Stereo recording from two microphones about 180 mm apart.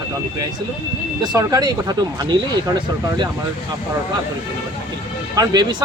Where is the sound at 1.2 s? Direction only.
20° right (ahead or behind).